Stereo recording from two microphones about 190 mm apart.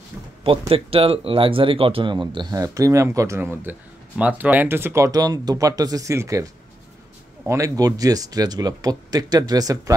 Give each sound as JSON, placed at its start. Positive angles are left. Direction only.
{"t": 0.4, "sound": "speech", "side_deg": -30}